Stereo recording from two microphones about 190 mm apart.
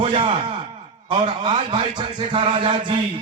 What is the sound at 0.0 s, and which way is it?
Speech, 25° right (ahead or behind).